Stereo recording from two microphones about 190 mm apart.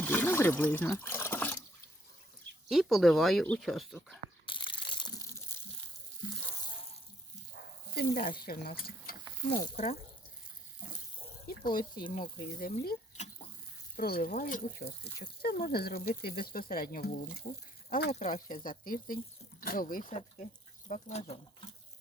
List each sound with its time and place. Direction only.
0.0 s speech: 10° left (ahead or behind)
2.6 s speech: centre (ahead or behind)
4.4 s crushing: 25° left (ahead or behind)
7.9 s speech: 50° left (ahead or behind)
9.6 s speech: 30° left (ahead or behind)
11.4 s speech: 50° left (ahead or behind)
11.9 s speech: 25° left (ahead or behind)
12.2 s speech: 50° left (ahead or behind)
13.9 s speech: 50° left (ahead or behind); by 21.7 s 35° left (ahead or behind)